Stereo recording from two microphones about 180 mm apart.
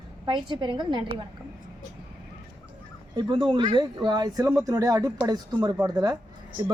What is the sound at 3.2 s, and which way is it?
Speech, 25° right (ahead or behind).